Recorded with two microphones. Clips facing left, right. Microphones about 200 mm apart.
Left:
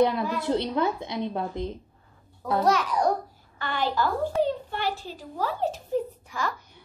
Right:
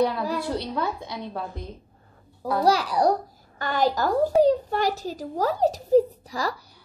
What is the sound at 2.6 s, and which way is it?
A child's voice, 35° right (ahead or behind).